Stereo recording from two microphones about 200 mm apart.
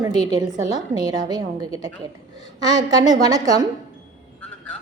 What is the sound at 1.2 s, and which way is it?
Speech, 20° right (ahead or behind).